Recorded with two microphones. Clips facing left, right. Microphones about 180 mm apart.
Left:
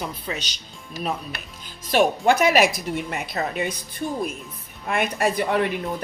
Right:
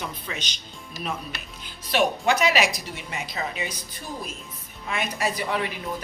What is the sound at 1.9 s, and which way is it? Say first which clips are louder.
A woman's voice: left 4 dB; 50° left (ahead or behind).